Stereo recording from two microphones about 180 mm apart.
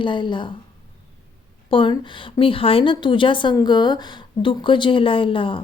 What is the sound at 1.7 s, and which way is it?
A woman's voice, 25° left (ahead or behind).